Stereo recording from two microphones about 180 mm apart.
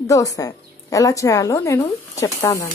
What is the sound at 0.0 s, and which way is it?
Speech, 20° left (ahead or behind).